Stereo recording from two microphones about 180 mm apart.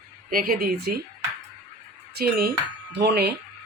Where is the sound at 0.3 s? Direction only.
55° right (ahead or behind).